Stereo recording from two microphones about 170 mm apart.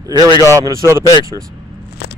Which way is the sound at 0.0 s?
20° right (ahead or behind).